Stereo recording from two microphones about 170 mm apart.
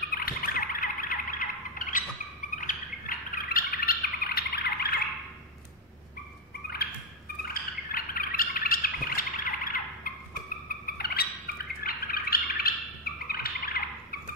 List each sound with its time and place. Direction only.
0.1 s music: 60° left (ahead or behind)
2.5 s bird: 50° left (ahead or behind); by 5.0 s 65° left (ahead or behind)
7.4 s bird: 55° left (ahead or behind)
10.9 s a sound: 65° left (ahead or behind)